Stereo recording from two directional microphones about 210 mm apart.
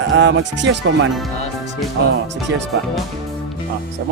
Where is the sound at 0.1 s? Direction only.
60° right (ahead or behind).